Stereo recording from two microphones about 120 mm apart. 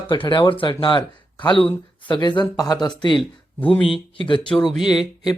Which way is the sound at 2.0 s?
40° left (ahead or behind).